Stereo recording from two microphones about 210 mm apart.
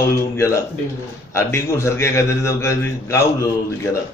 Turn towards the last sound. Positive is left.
turn(degrees=15)  # may be behind; listen again after turning